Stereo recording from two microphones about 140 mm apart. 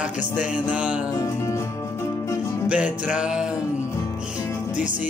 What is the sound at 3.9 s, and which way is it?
Music, 20° left (ahead or behind).